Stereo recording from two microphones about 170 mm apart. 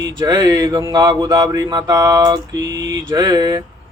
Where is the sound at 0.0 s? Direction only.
25° right (ahead or behind).